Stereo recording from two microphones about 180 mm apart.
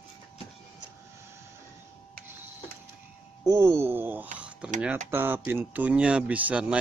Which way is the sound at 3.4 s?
15° right (ahead or behind).